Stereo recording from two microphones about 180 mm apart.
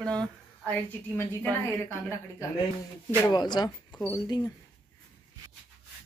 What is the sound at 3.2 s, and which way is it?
Speech, 25° left (ahead or behind).